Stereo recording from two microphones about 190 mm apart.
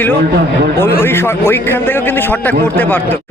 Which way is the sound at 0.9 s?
10° left (ahead or behind).